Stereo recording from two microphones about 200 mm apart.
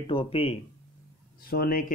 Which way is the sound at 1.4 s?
50° left (ahead or behind).